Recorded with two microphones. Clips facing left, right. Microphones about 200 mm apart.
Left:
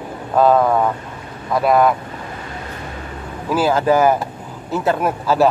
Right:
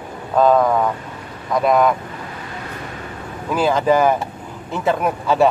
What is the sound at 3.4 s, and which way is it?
Speech, 5° left (ahead or behind).